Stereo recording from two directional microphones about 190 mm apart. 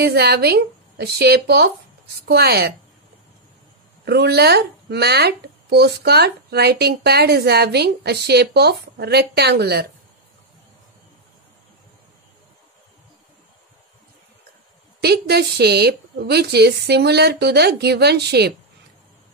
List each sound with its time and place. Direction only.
0.0 s speech: 55° right (ahead or behind)
4.0 s speech: 60° right (ahead or behind)
15.0 s speech: 60° right (ahead or behind)